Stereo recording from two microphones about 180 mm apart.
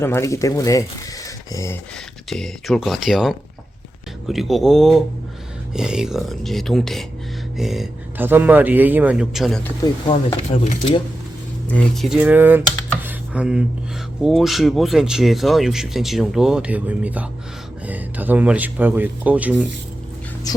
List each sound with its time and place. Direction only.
0.0 s speech: 15° left (ahead or behind)
2.3 s speech: centre (ahead or behind)
9.8 s speech: 25° left (ahead or behind)
11.7 s speech: 5° left (ahead or behind)